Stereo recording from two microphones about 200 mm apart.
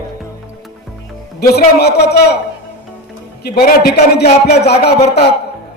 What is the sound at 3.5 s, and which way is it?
Speech, 50° left (ahead or behind).